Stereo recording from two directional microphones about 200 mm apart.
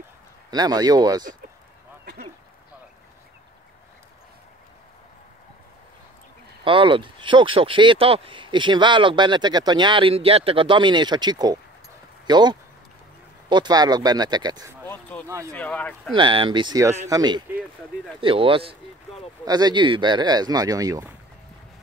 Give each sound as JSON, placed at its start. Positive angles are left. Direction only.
{"t": 0.5, "sound": "speech", "side_deg": -20}
{"t": 6.6, "sound": "speech", "side_deg": -25}
{"t": 14.9, "sound": "a sound", "side_deg": 5}
{"t": 15.2, "sound": "speech", "side_deg": -15}
{"t": 15.5, "sound": "speech", "side_deg": 5}
{"t": 16.2, "sound": "speech", "side_deg": -25}